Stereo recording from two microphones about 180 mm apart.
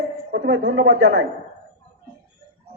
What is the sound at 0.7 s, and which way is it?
Speech, 90° right.